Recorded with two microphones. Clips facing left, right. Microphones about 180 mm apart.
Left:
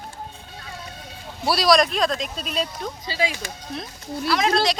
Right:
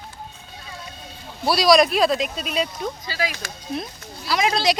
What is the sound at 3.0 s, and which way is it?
Speech, 25° left (ahead or behind).